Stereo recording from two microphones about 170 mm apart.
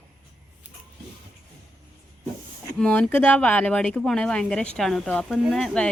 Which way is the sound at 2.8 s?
5° left (ahead or behind).